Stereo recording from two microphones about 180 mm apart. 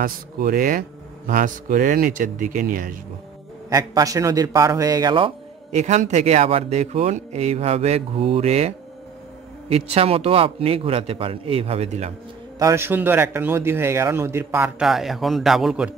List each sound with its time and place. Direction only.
0.0 s speech: 50° right (ahead or behind)
3.7 s a man's voice: 20° right (ahead or behind); by 12.1 s 35° right (ahead or behind)
12.5 s speech: 15° right (ahead or behind)
14.9 s a man's voice: centre (ahead or behind)